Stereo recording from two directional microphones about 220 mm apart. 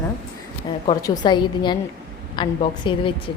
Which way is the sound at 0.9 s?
20° left (ahead or behind).